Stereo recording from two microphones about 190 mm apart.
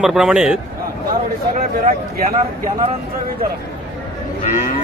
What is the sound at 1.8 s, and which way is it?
Speech, 45° right (ahead or behind).